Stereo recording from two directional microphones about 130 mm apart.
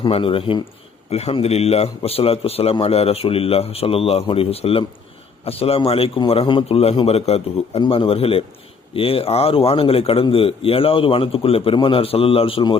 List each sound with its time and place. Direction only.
0.0 s a man's voice: 45° left (ahead or behind)